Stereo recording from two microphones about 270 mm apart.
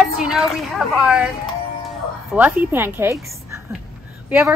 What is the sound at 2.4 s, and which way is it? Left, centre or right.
Speech, centre.